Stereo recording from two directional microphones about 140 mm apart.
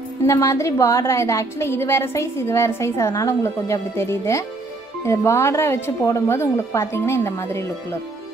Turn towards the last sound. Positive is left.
turn(degrees=20)  # may be behind; listen again after turning